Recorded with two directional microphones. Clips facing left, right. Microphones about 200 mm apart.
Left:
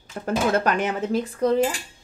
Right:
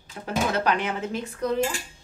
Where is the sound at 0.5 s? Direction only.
45° left (ahead or behind).